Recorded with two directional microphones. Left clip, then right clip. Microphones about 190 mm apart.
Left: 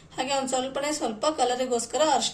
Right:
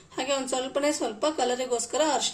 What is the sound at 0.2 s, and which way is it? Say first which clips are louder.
A woman's voice: left 1 dB; 50° right (ahead or behind).